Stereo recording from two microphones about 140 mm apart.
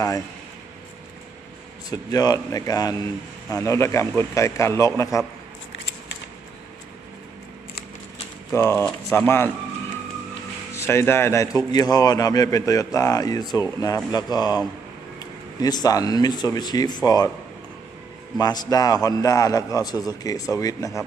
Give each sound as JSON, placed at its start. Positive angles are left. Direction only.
{"t": 1.9, "sound": "a man's voice", "side_deg": 30}
{"t": 8.5, "sound": "a man's voice", "side_deg": 20}
{"t": 10.8, "sound": "a man's voice", "side_deg": 20}
{"t": 18.3, "sound": "a man's voice", "side_deg": 30}